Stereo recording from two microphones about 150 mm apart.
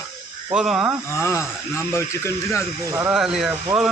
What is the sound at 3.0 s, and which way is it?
Speech, 5° right (ahead or behind).